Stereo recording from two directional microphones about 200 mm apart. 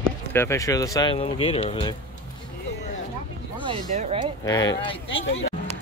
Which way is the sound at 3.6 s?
30° right (ahead or behind).